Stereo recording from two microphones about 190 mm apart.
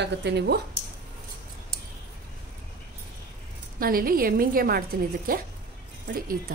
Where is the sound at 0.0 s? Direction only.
65° right (ahead or behind).